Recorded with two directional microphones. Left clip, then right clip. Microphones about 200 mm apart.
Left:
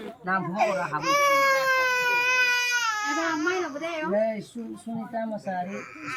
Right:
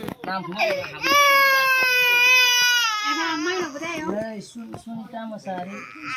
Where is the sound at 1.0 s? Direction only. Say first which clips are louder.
Right 6 dB; 35° right (ahead or behind).